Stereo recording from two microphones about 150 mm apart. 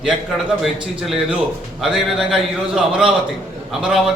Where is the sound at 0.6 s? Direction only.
Centre (ahead or behind).